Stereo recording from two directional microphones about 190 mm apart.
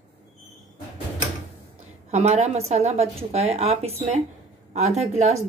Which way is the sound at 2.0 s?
35° right (ahead or behind).